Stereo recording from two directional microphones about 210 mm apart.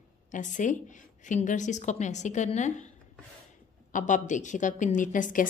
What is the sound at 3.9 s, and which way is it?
Speech, 35° left (ahead or behind).